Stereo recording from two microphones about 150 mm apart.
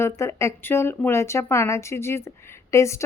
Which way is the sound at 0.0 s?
20° left (ahead or behind).